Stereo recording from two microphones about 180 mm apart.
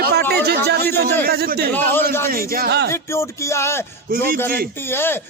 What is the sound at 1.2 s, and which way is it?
Speech, 55° right (ahead or behind).